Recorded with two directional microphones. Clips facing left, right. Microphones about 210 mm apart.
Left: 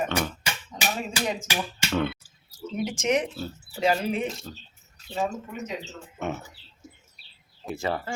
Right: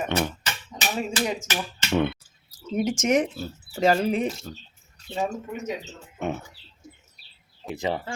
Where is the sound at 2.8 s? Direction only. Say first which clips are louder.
Right 3 dB; 45° right (ahead or behind).